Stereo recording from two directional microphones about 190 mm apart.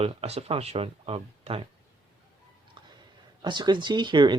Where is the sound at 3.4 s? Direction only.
25° right (ahead or behind).